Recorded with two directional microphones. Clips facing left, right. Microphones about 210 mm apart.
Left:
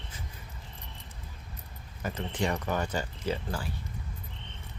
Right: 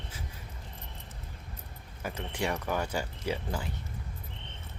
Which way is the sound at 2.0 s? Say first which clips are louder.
Left 2 dB; 10° right (ahead or behind).